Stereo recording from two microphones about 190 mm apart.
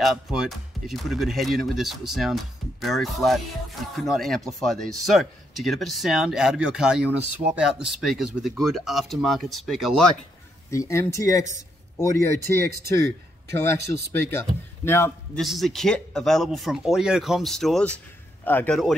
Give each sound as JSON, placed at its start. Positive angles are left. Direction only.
{"t": 0.0, "sound": "speech", "side_deg": 0}
{"t": 10.7, "sound": "speech", "side_deg": 15}
{"t": 15.3, "sound": "speech", "side_deg": 0}